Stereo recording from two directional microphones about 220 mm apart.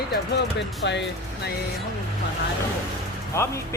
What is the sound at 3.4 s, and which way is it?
Speech, 10° left (ahead or behind).